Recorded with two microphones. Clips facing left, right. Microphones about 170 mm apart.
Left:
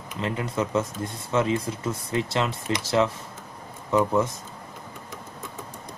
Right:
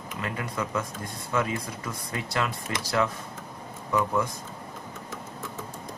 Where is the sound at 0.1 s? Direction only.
25° left (ahead or behind).